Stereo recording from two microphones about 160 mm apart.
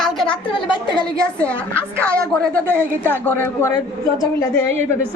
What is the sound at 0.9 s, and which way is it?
A man's voice, 5° left (ahead or behind).